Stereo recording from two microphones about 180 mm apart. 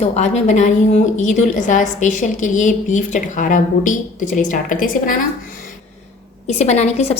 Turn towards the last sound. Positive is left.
turn(degrees=35)  # may be behind; listen again after turning